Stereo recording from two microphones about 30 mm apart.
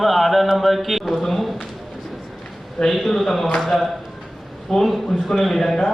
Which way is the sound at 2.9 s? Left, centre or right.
Centre.